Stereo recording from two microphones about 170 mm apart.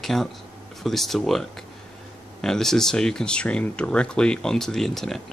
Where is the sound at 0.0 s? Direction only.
Centre (ahead or behind).